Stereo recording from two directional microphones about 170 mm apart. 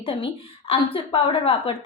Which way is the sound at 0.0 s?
30° left (ahead or behind).